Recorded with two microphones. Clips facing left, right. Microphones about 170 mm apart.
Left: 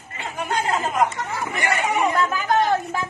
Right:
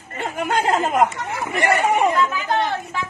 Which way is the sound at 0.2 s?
50° right (ahead or behind).